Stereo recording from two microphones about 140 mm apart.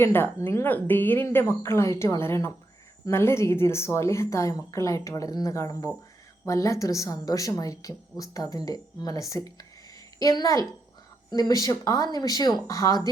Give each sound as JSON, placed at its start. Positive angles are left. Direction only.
{"t": 0.0, "sound": "speech", "side_deg": 15}